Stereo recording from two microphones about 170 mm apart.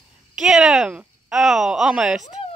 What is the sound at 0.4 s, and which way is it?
Speech, 5° right (ahead or behind).